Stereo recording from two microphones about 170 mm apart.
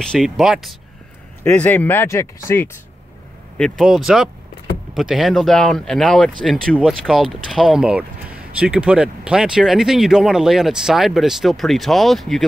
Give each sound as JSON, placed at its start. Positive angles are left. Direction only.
{"t": 0.0, "sound": "speech", "side_deg": 0}
{"t": 1.4, "sound": "speech", "side_deg": 10}
{"t": 3.5, "sound": "speech", "side_deg": 5}